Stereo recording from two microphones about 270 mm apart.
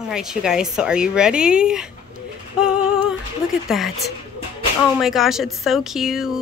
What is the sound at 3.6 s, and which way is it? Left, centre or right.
Speech, centre.